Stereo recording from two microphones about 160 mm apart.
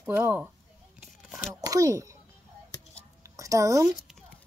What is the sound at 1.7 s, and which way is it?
Speech, 20° right (ahead or behind).